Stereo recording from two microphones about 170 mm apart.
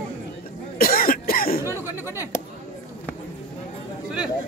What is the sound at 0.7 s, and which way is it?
Cough, 60° left (ahead or behind).